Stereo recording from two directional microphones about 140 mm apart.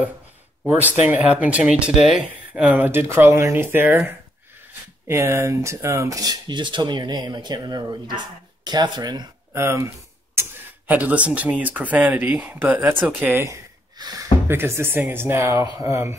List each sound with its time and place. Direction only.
0.7 s speech: 10° right (ahead or behind)
5.0 s speech: 20° right (ahead or behind)
9.5 s speech: 20° right (ahead or behind)
10.9 s speech: 10° right (ahead or behind)
14.0 s speech: 30° right (ahead or behind)
14.5 s speech: 15° right (ahead or behind)